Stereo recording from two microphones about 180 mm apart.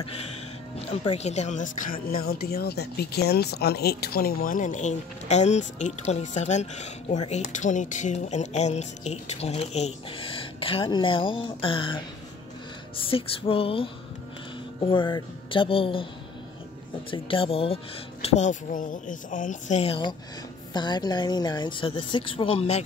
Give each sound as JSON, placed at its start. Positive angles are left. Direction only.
{"t": 0.0, "sound": "speech", "side_deg": 35}
{"t": 17.1, "sound": "speech", "side_deg": 30}
{"t": 18.2, "sound": "speech", "side_deg": 45}